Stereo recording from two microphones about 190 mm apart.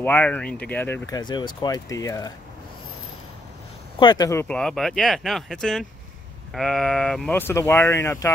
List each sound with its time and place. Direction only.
0.0 s speech: 10° left (ahead or behind)
4.0 s speech: 20° left (ahead or behind)